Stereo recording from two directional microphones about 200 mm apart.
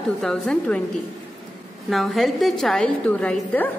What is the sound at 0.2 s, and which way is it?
Speech, 5° left (ahead or behind).